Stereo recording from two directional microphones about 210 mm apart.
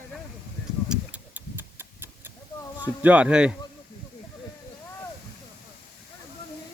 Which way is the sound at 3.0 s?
5° right (ahead or behind).